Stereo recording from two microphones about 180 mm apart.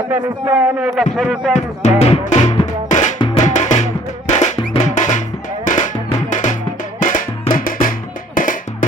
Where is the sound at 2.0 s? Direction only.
35° left (ahead or behind).